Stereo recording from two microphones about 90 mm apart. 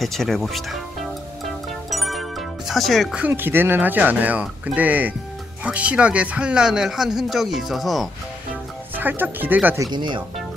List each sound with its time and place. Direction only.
0.0 s music: 5° left (ahead or behind)
3.2 s speech: 20° right (ahead or behind); by 8.1 s centre (ahead or behind)
8.9 s speech: 20° right (ahead or behind)
9.8 s speech: 60° right (ahead or behind)